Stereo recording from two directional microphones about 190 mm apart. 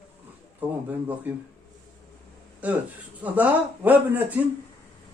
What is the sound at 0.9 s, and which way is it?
Speech, 10° right (ahead or behind).